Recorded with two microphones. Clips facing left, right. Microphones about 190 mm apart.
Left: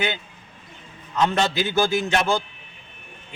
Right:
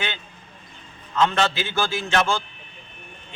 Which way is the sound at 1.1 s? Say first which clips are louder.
Even; 15° left (ahead or behind).